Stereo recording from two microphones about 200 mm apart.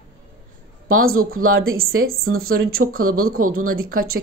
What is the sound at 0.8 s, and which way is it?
Speech, 90° right.